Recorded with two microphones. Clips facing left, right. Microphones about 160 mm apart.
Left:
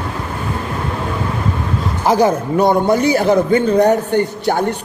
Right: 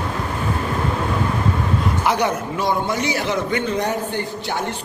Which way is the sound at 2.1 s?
40° left (ahead or behind).